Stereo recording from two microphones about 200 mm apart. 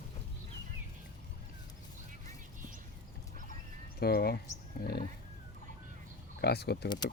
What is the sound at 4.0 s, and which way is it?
Speech, 50° left (ahead or behind).